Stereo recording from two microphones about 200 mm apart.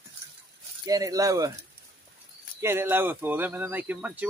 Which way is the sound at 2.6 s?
10° right (ahead or behind).